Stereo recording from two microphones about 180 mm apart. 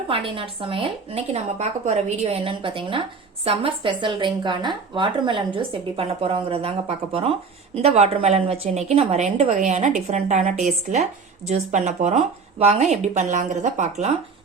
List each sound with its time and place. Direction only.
0.1 s speech: 30° right (ahead or behind)